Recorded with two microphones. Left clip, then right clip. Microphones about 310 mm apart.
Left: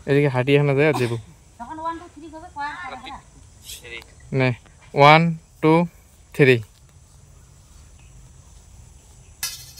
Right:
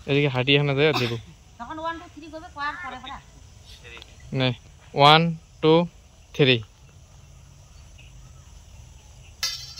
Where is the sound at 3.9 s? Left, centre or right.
Centre.